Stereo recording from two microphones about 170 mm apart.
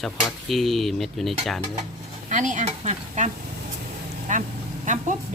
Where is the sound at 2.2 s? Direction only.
45° right (ahead or behind).